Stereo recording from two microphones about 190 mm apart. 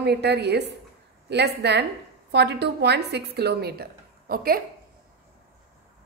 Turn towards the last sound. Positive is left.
turn(degrees=-50)  # may be behind; listen again after turning